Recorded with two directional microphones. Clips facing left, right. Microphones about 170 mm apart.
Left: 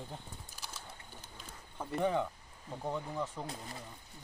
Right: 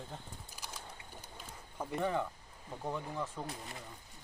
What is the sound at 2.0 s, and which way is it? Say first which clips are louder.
Speech: left 3 dB; 15° left (ahead or behind).